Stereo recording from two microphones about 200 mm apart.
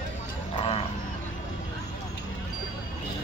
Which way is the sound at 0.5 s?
30° left (ahead or behind).